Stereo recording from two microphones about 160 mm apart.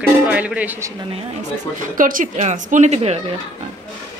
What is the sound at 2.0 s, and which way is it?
A woman's voice, 60° right (ahead or behind).